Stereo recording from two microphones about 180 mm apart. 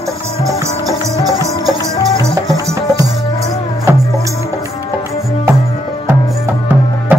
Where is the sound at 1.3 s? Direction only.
20° right (ahead or behind).